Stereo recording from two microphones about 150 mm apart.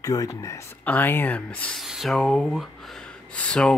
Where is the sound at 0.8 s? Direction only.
10° left (ahead or behind).